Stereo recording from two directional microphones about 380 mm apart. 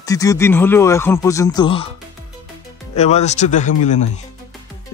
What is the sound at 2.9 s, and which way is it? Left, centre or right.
Speech, centre.